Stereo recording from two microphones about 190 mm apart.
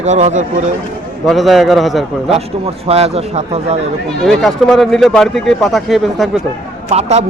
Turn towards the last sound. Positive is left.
turn(degrees=-35)  # may be behind; listen again after turning